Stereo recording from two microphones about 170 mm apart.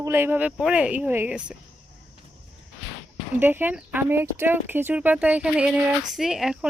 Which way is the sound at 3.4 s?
10° right (ahead or behind).